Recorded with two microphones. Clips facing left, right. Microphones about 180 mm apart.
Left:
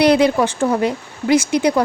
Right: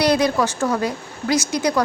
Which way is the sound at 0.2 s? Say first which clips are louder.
Left 4 dB; 25° left (ahead or behind).